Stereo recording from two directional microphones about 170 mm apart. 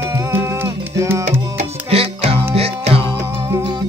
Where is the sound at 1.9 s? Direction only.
35° right (ahead or behind).